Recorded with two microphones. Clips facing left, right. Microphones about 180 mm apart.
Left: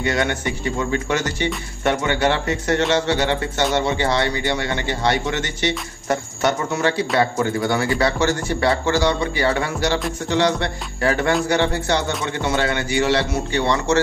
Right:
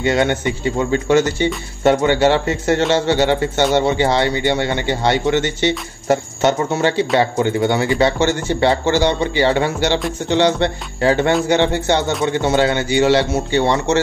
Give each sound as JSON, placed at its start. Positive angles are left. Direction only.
{"t": 0.0, "sound": "a man's voice", "side_deg": -25}